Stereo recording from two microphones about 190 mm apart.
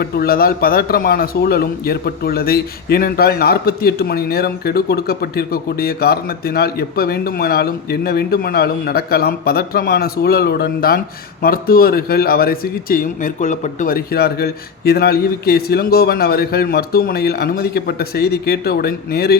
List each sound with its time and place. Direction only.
0.0 s a man's voice: 55° left (ahead or behind)